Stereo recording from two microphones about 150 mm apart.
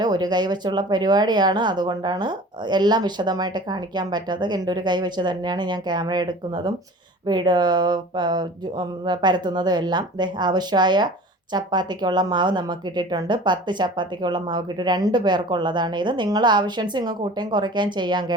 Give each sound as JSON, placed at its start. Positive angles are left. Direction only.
{"t": 0.0, "sound": "speech", "side_deg": -30}